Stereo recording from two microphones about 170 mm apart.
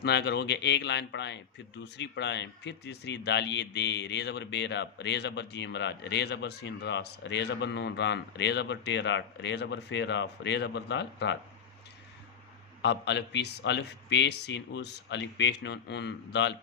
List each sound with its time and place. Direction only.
0.0 s speech: 80° left
12.8 s speech: 90° left